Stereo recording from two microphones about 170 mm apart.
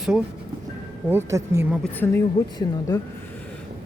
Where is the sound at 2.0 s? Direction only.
15° left (ahead or behind).